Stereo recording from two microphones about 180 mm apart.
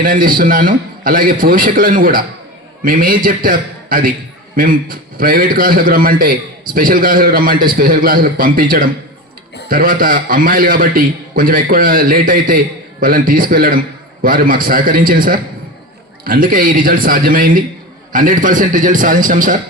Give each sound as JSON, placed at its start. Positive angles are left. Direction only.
{"t": 0.0, "sound": "a man's voice", "side_deg": -50}